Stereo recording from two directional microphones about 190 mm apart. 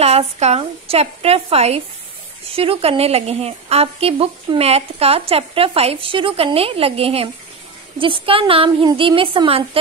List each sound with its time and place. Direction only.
0.0 s a woman's voice: 35° right (ahead or behind)